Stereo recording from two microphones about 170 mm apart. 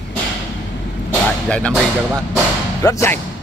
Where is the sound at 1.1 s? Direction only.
5° left (ahead or behind).